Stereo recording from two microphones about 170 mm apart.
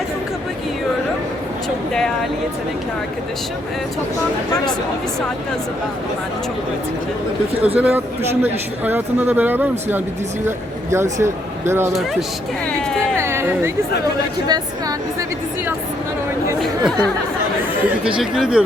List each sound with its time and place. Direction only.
7.8 s speech: 10° right (ahead or behind)
12.9 s a sound: 5° left (ahead or behind)
13.1 s a sound: 15° right (ahead or behind)
14.4 s speech: 25° right (ahead or behind)
16.6 s chatter: centre (ahead or behind)
18.2 s speech: 5° right (ahead or behind)